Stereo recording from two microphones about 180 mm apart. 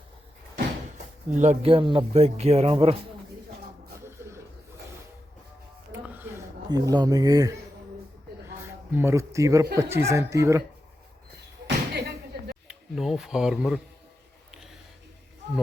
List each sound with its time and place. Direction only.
1.3 s a man's voice: 40° right (ahead or behind)
6.7 s speech: 20° right (ahead or behind)
8.9 s speech: 10° right (ahead or behind)
11.6 s slam: 65° right (ahead or behind)
12.6 s speech: centre (ahead or behind)